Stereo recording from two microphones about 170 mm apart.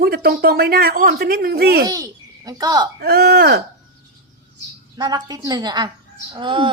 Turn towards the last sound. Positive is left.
turn(degrees=-30)  # may be behind; listen again after turning